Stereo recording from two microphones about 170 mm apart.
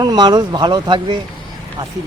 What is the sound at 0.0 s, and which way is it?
Speech, 25° right (ahead or behind).